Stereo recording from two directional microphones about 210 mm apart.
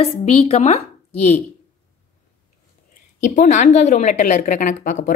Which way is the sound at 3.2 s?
35° left (ahead or behind).